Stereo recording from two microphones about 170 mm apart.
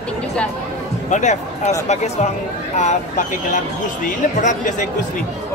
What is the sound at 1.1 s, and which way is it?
Speech, 45° left (ahead or behind).